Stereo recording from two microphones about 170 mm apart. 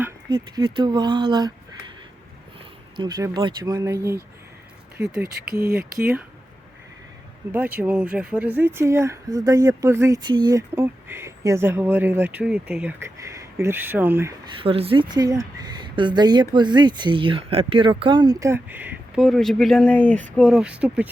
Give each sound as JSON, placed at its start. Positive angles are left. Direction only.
{"t": 0.3, "sound": "speech", "side_deg": -25}
{"t": 2.9, "sound": "speech", "side_deg": -25}
{"t": 4.9, "sound": "speech", "side_deg": -5}
{"t": 7.5, "sound": "speech", "side_deg": -10}
{"t": 10.8, "sound": "speech", "side_deg": -15}
{"t": 14.6, "sound": "speech", "side_deg": -35}